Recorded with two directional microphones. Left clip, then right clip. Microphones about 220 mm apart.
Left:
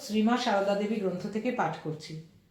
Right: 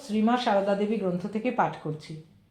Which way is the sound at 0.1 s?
40° right (ahead or behind).